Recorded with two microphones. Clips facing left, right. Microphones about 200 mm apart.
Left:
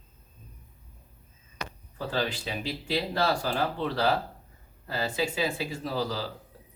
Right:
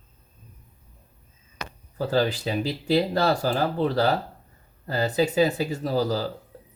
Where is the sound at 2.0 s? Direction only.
40° right (ahead or behind).